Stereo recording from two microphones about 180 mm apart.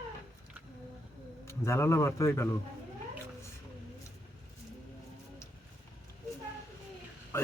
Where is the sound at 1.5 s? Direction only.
15° left (ahead or behind).